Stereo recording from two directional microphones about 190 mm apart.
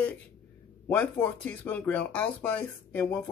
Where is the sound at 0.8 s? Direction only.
10° left (ahead or behind).